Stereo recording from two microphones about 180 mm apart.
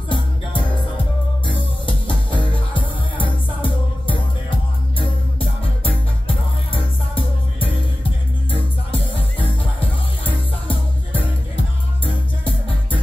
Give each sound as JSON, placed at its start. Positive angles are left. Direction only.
{"t": 0.1, "sound": "music", "side_deg": 30}
{"t": 5.6, "sound": "music", "side_deg": 30}
{"t": 9.4, "sound": "music", "side_deg": 10}